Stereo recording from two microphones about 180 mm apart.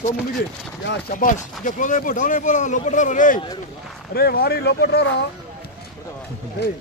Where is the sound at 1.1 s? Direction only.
45° left (ahead or behind).